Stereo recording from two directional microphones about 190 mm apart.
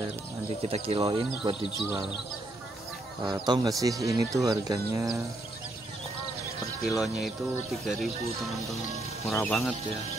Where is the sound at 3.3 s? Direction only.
20° right (ahead or behind).